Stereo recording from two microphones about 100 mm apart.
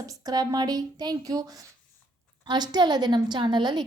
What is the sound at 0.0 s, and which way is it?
A woman's voice, 40° right (ahead or behind).